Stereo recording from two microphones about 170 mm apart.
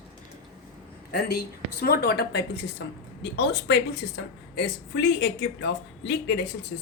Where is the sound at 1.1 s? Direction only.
70° left (ahead or behind).